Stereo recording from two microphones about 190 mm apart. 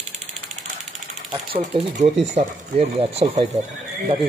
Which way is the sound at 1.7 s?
35° right (ahead or behind).